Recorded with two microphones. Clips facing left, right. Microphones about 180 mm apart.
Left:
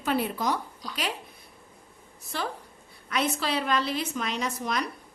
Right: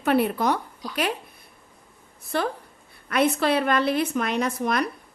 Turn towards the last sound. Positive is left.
turn(degrees=-55)  # may be behind; listen again after turning